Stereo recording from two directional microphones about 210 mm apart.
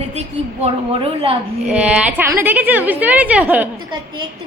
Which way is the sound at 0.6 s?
30° right (ahead or behind).